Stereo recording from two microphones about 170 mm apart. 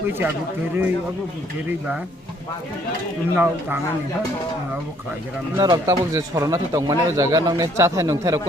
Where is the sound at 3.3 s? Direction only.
10° right (ahead or behind).